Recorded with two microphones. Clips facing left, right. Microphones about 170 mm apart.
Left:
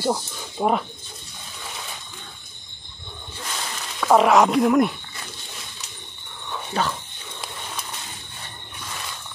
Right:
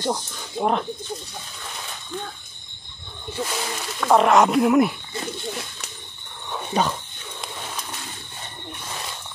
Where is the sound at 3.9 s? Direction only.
Centre (ahead or behind).